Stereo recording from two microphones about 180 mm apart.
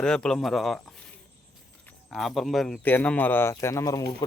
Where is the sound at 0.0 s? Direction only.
5° left (ahead or behind).